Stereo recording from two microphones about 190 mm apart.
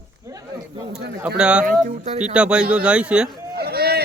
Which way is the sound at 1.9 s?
35° right (ahead or behind).